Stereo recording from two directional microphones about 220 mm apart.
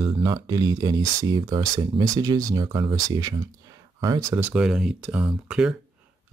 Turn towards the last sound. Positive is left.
turn(degrees=-5)  # may be behind; listen again after turning